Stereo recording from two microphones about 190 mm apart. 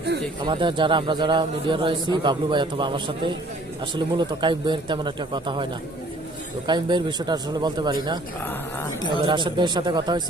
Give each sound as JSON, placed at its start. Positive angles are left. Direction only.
{"t": 0.4, "sound": "a man's voice", "side_deg": -25}
{"t": 6.7, "sound": "a man's voice", "side_deg": -25}
{"t": 8.8, "sound": "a man's voice", "side_deg": 25}
{"t": 9.2, "sound": "a man's voice", "side_deg": -25}